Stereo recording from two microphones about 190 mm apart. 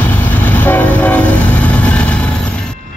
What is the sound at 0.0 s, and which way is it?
Train, 10° left (ahead or behind).